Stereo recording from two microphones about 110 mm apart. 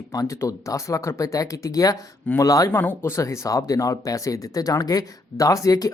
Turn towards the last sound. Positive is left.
turn(degrees=35)  # may be behind; listen again after turning